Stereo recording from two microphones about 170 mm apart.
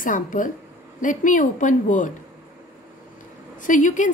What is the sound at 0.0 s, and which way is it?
A woman's voice, 50° left (ahead or behind).